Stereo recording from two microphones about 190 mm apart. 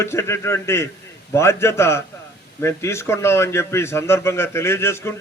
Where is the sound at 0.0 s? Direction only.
15° left (ahead or behind).